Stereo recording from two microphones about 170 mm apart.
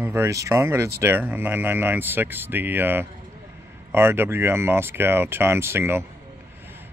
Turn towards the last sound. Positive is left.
turn(degrees=-15)  # may be behind; listen again after turning